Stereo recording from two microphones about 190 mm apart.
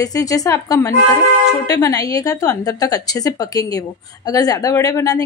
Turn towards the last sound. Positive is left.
turn(degrees=20)  # may be behind; listen again after turning